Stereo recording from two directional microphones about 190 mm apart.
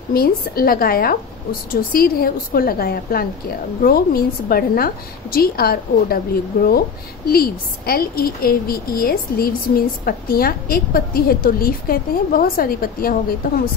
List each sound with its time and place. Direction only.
0.1 s a woman's voice: 50° left (ahead or behind)